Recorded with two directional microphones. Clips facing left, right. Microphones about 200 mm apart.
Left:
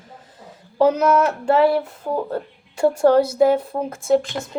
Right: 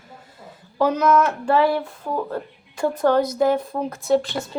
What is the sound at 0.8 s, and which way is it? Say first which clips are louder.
Speech: left 2 dB; 30° left (ahead or behind).